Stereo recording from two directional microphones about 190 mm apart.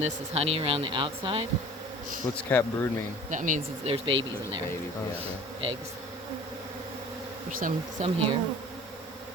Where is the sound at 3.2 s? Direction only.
40° right (ahead or behind).